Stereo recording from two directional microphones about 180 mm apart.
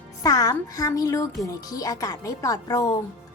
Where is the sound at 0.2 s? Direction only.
20° left (ahead or behind).